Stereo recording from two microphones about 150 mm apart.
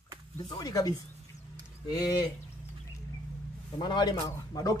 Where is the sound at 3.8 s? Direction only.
30° left (ahead or behind).